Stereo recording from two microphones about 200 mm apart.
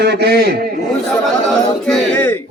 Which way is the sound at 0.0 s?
55° right (ahead or behind).